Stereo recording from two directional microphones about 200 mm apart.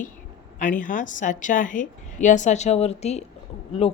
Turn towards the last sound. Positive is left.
turn(degrees=30)  # may be behind; listen again after turning